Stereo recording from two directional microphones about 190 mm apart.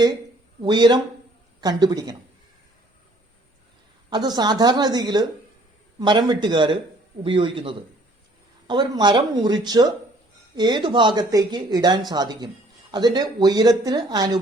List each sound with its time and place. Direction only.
0.6 s speech: 25° right (ahead or behind)
4.1 s speech: 20° right (ahead or behind)